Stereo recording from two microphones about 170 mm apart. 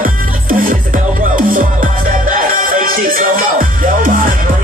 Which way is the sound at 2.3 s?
55° right (ahead or behind).